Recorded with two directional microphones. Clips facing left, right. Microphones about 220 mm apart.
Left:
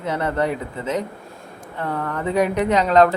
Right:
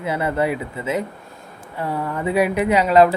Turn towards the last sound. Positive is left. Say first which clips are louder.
# right 1 dB
turn(degrees=-10)  # may be behind; listen again after turning